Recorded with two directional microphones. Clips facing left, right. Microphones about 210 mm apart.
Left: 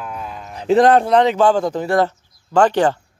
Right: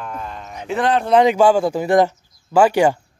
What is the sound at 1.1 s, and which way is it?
Speech, 10° right (ahead or behind).